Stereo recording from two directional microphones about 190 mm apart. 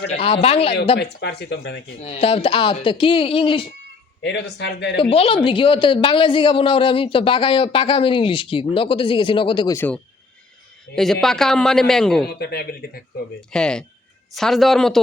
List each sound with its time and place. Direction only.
0.4 s speech: 30° left (ahead or behind)
0.9 s speech: 60° left (ahead or behind)
2.0 s a man's voice: 30° left (ahead or behind)
4.2 s speech: 65° left (ahead or behind)
4.9 s a man's voice: 30° left (ahead or behind)
9.7 s a man's voice: 10° left (ahead or behind)
12.3 s speech: 55° left (ahead or behind)
13.5 s a man's voice: 5° left (ahead or behind)